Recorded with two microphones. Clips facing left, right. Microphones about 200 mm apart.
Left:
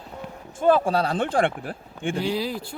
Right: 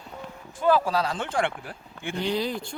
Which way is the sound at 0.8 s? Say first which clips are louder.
Left 3 dB; 30° left (ahead or behind).